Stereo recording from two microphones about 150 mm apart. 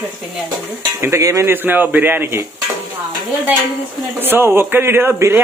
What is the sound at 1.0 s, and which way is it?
A man's voice, 20° right (ahead or behind).